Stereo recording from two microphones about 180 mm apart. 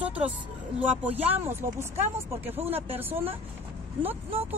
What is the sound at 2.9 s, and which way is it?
Speech, 10° right (ahead or behind).